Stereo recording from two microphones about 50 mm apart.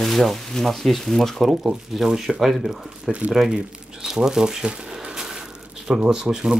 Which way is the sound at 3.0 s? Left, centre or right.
Right.